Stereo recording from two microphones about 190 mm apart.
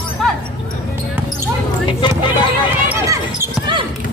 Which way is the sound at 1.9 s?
25° left (ahead or behind).